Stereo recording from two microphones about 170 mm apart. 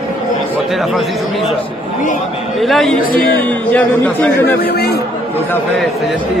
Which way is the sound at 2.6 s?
Centre (ahead or behind).